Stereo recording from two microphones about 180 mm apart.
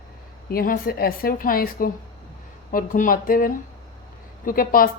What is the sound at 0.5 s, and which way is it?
A woman's voice, 55° left (ahead or behind).